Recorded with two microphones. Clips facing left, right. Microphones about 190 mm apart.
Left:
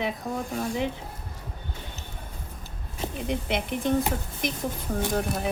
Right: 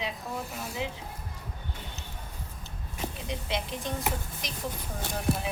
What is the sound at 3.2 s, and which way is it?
Speech, 60° left (ahead or behind).